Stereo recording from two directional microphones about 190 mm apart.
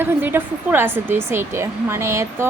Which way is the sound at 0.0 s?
10° right (ahead or behind).